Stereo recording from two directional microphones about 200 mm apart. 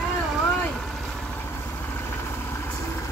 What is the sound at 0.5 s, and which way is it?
Vehicle, 5° left (ahead or behind).